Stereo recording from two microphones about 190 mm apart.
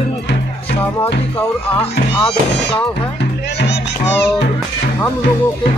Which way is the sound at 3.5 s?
65° left (ahead or behind).